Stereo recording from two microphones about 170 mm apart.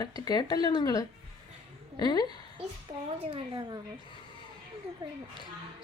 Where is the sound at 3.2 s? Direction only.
30° right (ahead or behind).